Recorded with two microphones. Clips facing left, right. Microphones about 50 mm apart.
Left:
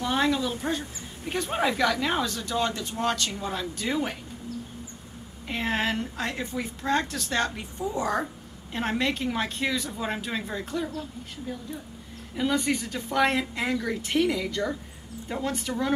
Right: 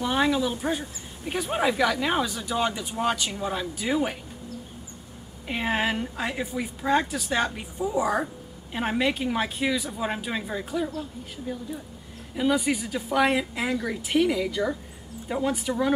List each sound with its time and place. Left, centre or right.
0.0 s speech: centre
5.5 s speech: centre